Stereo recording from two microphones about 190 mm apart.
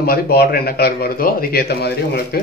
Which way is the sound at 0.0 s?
55° left (ahead or behind).